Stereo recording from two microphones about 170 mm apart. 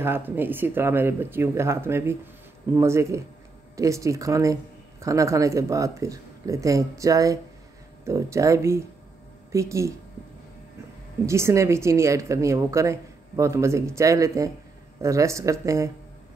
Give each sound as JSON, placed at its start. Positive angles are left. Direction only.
{"t": 0.0, "sound": "a woman's voice", "side_deg": -15}
{"t": 11.2, "sound": "a woman's voice", "side_deg": -15}